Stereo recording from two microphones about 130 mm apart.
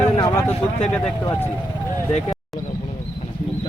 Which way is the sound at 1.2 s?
25° left (ahead or behind).